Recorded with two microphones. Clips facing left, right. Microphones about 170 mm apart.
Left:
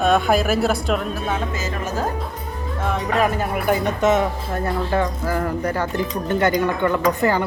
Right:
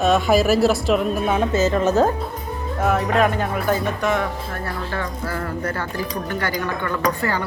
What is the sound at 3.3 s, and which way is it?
Speech, 10° left (ahead or behind).